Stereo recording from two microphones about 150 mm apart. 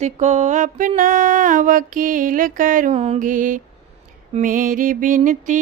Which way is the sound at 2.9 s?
45° right (ahead or behind).